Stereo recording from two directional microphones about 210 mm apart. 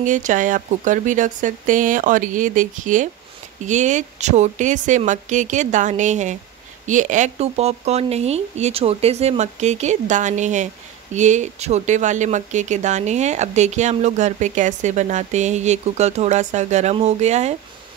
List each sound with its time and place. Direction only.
0.0 s speech: 35° right (ahead or behind)